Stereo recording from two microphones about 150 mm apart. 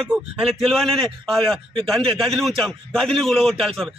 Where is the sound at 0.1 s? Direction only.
Centre (ahead or behind).